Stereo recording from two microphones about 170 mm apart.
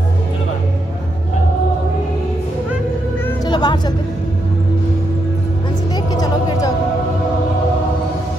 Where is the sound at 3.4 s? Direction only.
25° left (ahead or behind).